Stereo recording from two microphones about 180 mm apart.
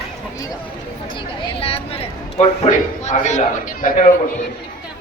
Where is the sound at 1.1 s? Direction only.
25° left (ahead or behind).